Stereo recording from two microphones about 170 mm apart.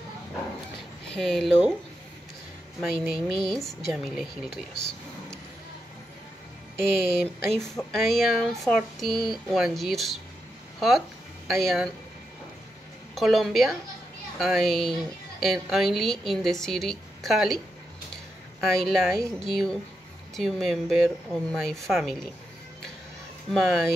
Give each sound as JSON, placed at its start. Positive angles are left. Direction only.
{"t": 1.1, "sound": "speech", "side_deg": 0}
{"t": 2.8, "sound": "speech", "side_deg": 0}
{"t": 4.5, "sound": "speech", "side_deg": 70}
{"t": 7.0, "sound": "speech", "side_deg": 0}
{"t": 13.1, "sound": "speech", "side_deg": 0}
{"t": 18.6, "sound": "speech", "side_deg": 0}
{"t": 23.5, "sound": "speech", "side_deg": 0}